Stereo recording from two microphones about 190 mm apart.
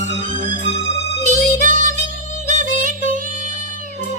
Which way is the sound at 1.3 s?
40° right (ahead or behind).